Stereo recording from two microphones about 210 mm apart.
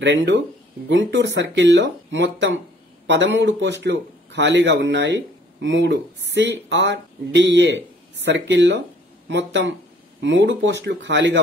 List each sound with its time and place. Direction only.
0.0 s speech: 60° right (ahead or behind)